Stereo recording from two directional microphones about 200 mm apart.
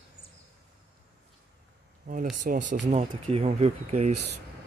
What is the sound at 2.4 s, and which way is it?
Speech, 40° right (ahead or behind).